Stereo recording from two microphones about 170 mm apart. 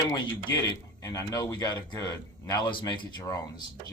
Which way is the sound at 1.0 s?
20° left (ahead or behind).